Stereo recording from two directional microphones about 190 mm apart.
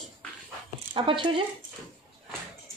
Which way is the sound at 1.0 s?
25° right (ahead or behind).